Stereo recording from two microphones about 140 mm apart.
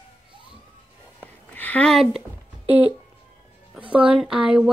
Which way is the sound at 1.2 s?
10° left (ahead or behind).